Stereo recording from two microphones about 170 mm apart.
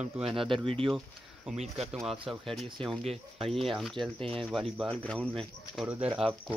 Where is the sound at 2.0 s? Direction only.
Centre (ahead or behind).